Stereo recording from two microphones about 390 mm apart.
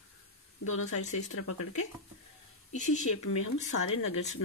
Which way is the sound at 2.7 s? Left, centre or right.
Centre.